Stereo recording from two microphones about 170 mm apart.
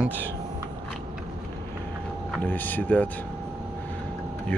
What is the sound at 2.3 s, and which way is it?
Speech, 10° left (ahead or behind).